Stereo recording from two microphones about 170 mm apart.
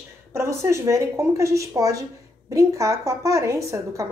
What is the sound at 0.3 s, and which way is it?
A woman's voice, 15° right (ahead or behind).